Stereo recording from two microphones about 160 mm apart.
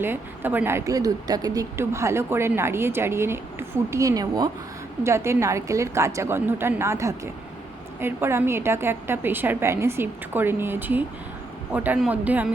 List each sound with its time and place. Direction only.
0.0 s speech: 10° right (ahead or behind)